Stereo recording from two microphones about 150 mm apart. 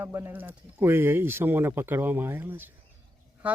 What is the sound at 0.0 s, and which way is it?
Speech, 15° right (ahead or behind).